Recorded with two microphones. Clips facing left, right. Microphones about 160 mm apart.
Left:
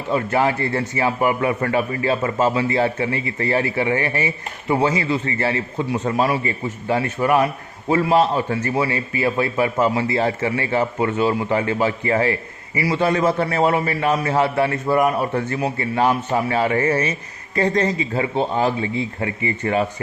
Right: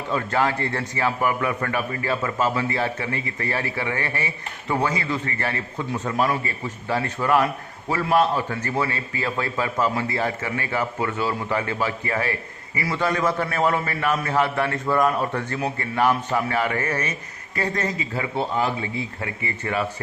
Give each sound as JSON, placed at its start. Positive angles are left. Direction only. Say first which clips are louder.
{"t": 0.1, "sound": "a man's voice", "louder": "left 4 dB", "side_deg": 20}
{"t": 17.6, "sound": "a man's voice", "louder": "left 7 dB", "side_deg": 35}